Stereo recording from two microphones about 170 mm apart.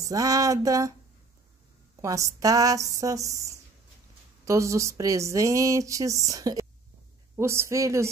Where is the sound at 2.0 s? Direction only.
20° right (ahead or behind).